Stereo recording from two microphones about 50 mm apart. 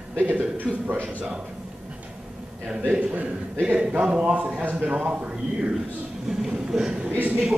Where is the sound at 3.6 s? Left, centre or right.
Centre.